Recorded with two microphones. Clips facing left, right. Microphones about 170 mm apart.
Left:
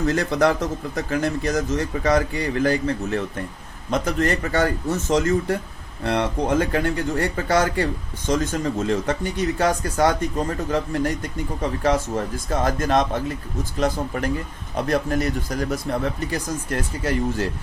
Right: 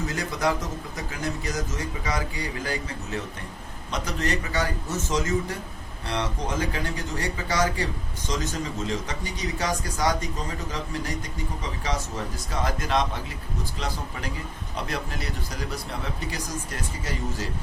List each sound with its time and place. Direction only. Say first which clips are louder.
0.1 s speech: left 8 dB; 60° left (ahead or behind)